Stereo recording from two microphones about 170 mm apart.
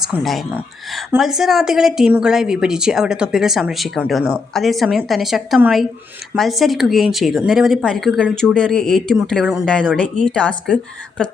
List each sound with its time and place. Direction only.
0.0 s speech: centre (ahead or behind)